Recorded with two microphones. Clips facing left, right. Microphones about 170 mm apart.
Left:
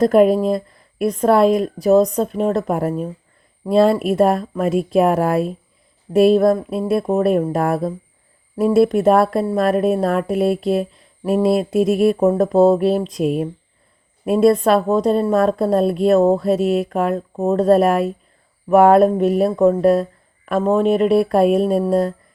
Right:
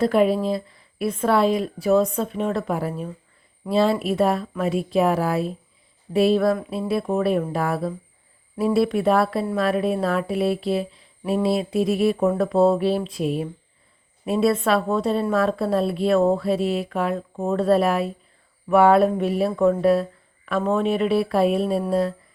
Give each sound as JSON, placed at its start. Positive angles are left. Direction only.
{"t": 0.0, "sound": "a woman's voice", "side_deg": 45}